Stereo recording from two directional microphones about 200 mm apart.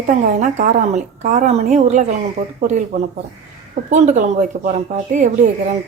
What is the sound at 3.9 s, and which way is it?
Speech, 35° right (ahead or behind).